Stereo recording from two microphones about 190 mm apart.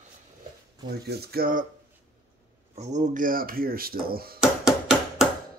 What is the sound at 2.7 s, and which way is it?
Speech, 35° right (ahead or behind).